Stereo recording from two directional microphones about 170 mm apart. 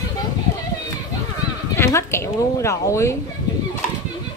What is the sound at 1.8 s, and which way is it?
A woman's voice, 15° left (ahead or behind).